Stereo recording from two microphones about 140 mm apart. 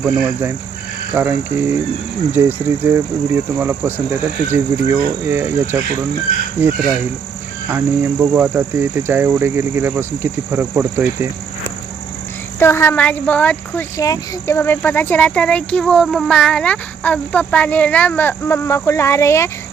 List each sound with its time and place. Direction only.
0.0 s speech: 10° right (ahead or behind)
12.5 s speech: 15° left (ahead or behind)
13.9 s speech: 25° left (ahead or behind)